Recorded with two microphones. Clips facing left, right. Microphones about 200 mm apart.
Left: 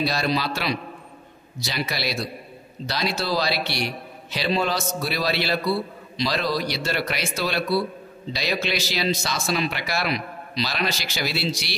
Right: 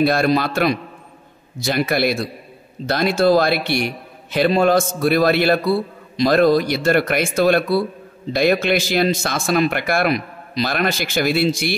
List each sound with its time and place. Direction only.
0.0 s a man's voice: 55° right (ahead or behind)